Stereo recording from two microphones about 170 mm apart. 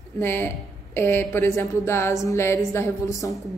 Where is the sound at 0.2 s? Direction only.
10° left (ahead or behind).